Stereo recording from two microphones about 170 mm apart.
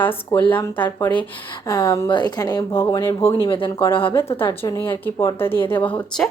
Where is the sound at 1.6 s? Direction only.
25° left (ahead or behind).